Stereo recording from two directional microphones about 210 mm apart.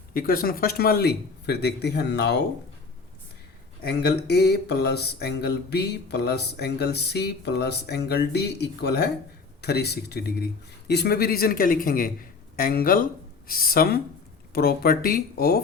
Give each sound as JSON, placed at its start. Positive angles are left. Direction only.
{"t": 0.1, "sound": "speech", "side_deg": 45}
{"t": 3.8, "sound": "speech", "side_deg": 50}